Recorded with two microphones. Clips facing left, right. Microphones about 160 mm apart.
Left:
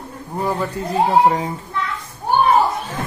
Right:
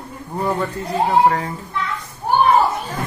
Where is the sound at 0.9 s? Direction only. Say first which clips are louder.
Left 1 dB; 20° left (ahead or behind).